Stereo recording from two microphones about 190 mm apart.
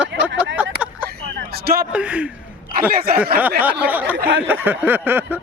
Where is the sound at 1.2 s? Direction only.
55° right (ahead or behind).